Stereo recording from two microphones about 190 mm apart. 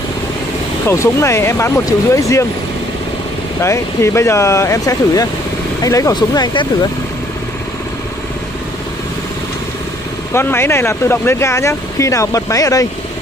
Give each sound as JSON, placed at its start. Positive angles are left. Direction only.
{"t": 0.8, "sound": "speech", "side_deg": 15}
{"t": 3.6, "sound": "speech", "side_deg": 15}
{"t": 10.3, "sound": "speech", "side_deg": 10}